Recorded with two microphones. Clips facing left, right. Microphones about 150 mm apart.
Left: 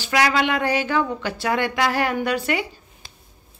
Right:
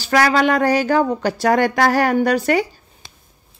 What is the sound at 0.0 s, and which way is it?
A woman's voice, 40° right (ahead or behind).